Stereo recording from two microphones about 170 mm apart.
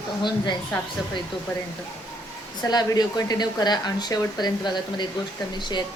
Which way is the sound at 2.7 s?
25° left (ahead or behind).